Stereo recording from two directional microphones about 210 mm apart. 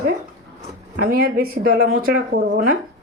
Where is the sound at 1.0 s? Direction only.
45° right (ahead or behind).